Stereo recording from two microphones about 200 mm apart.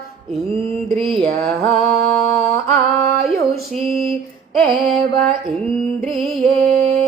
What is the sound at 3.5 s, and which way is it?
Music, centre (ahead or behind).